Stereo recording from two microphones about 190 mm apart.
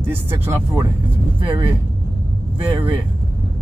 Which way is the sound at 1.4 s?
25° right (ahead or behind).